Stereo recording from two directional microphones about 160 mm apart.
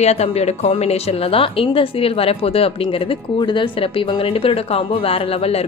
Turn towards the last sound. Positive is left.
turn(degrees=35)  # may be behind; listen again after turning